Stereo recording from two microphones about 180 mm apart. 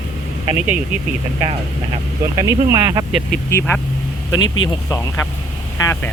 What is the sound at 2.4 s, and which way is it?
Speech, 15° right (ahead or behind).